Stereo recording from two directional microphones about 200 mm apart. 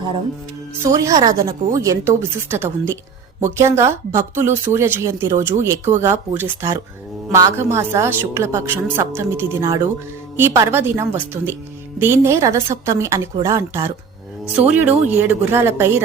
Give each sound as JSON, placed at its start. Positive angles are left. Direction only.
{"t": 0.9, "sound": "a woman's voice", "side_deg": -15}